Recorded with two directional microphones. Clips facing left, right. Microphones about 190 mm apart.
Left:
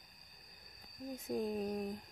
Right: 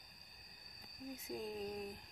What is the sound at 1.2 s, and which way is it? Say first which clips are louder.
Speech: left 7 dB; 45° left (ahead or behind).